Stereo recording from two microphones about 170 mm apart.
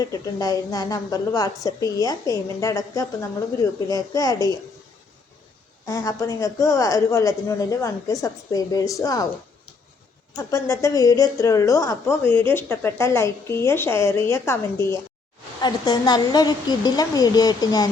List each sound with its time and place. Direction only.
0.0 s a woman's voice: 20° left (ahead or behind)
5.8 s a woman's voice: 20° left (ahead or behind)
10.3 s a woman's voice: 20° left (ahead or behind)